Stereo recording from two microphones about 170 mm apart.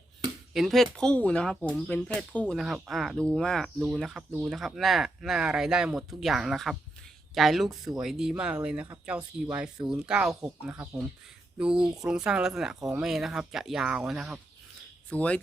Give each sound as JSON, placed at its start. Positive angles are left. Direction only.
{"t": 0.5, "sound": "speech", "side_deg": 0}
{"t": 15.1, "sound": "speech", "side_deg": 5}